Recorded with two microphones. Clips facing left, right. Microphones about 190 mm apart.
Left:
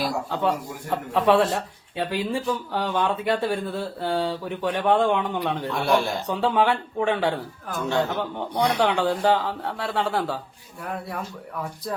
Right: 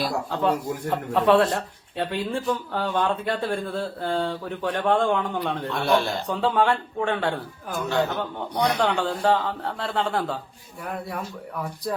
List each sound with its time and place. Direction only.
0.0 s speech: centre (ahead or behind)